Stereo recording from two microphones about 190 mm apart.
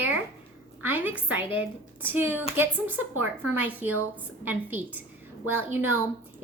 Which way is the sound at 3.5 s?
10° right (ahead or behind).